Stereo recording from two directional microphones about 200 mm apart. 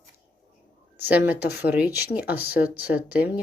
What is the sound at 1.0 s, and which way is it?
Speech, 10° right (ahead or behind).